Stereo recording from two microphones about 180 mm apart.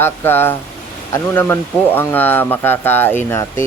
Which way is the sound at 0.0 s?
10° left (ahead or behind).